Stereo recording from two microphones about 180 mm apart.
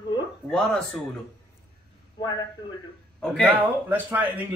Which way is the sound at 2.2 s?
25° left (ahead or behind).